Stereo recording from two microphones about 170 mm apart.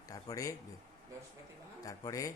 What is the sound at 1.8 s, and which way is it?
Speech, 20° left (ahead or behind).